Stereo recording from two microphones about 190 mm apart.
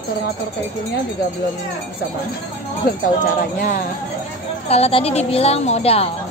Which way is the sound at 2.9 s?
55° left (ahead or behind).